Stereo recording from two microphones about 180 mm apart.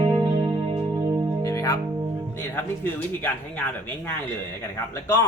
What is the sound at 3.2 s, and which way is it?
Speech, 10° left (ahead or behind).